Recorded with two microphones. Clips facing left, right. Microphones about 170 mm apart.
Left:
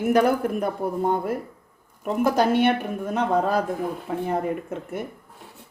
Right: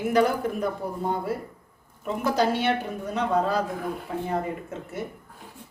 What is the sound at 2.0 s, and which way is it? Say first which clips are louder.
Speech: left 3 dB; 55° left (ahead or behind).